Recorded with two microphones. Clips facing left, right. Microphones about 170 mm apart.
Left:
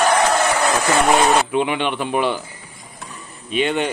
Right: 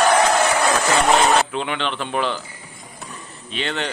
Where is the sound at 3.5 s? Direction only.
15° left (ahead or behind).